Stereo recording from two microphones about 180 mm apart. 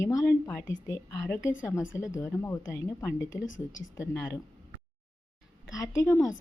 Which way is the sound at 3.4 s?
90° left.